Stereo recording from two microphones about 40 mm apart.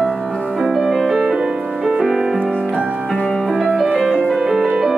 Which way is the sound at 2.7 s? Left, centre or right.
Right.